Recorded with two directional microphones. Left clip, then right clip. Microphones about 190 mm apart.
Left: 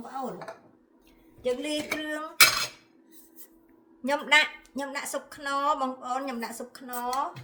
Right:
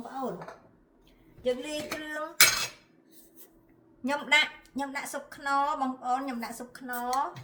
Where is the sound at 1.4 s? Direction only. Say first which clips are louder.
Left 2 dB; 40° left (ahead or behind).